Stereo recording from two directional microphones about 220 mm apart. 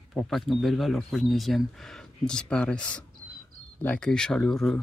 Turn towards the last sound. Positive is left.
turn(degrees=0)  # may be behind; listen again after turning